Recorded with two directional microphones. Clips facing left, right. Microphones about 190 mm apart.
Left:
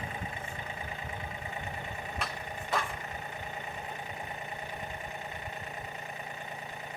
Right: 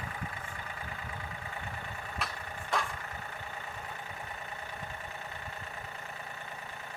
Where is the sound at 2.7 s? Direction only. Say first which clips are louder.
Even; 5° left (ahead or behind).